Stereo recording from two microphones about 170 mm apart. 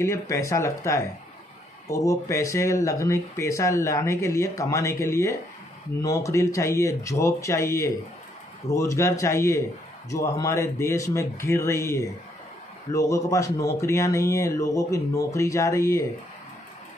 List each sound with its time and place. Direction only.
0.0 s speech: 15° left (ahead or behind)